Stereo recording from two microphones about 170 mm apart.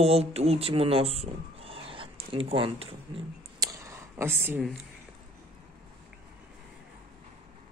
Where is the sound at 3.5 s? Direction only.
20° right (ahead or behind).